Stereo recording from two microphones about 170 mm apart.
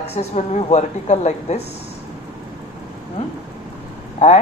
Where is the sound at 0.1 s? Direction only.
40° left (ahead or behind).